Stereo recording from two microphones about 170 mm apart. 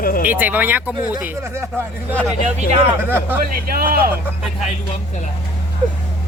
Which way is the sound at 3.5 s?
60° right (ahead or behind).